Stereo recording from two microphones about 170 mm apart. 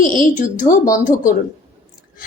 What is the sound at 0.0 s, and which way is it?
Speech, 50° left (ahead or behind).